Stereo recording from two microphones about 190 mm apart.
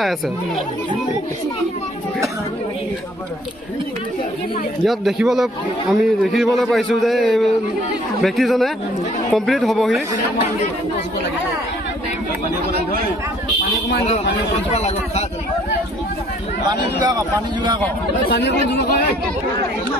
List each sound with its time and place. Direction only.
4.8 s a man's voice: centre (ahead or behind)
14.7 s speech: 35° left (ahead or behind)
16.7 s speech: 20° right (ahead or behind)
18.3 s speech: 60° left (ahead or behind)